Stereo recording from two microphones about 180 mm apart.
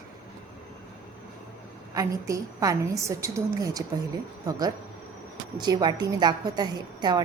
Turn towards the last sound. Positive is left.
turn(degrees=-25)  # may be behind; listen again after turning